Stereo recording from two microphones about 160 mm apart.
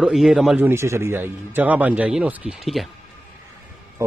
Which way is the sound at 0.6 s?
15° right (ahead or behind).